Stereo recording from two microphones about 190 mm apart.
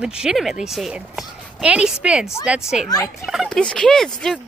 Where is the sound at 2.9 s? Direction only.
15° left (ahead or behind).